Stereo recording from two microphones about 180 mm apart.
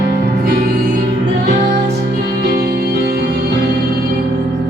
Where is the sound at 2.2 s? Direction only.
60° right (ahead or behind).